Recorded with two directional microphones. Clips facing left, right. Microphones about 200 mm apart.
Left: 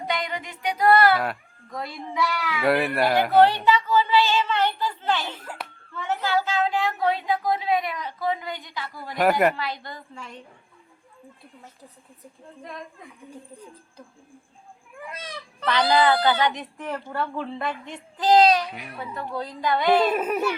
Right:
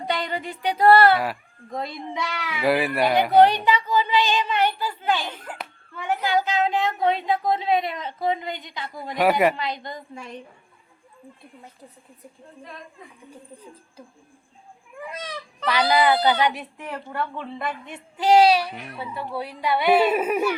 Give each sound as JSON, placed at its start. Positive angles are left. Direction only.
{"t": 0.1, "sound": "music", "side_deg": -30}
{"t": 1.7, "sound": "speech", "side_deg": -20}
{"t": 2.6, "sound": "speech", "side_deg": 0}
{"t": 3.3, "sound": "speech", "side_deg": -15}
{"t": 15.6, "sound": "speech", "side_deg": -10}
{"t": 18.7, "sound": "speech", "side_deg": 0}